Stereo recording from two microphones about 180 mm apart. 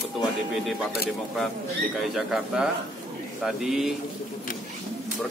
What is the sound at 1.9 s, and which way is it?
A man's voice, centre (ahead or behind).